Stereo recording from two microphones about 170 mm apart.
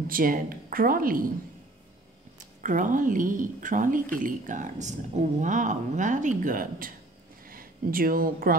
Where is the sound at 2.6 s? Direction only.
50° right (ahead or behind).